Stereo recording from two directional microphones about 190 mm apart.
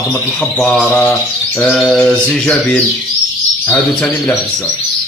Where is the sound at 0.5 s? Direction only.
5° left (ahead or behind).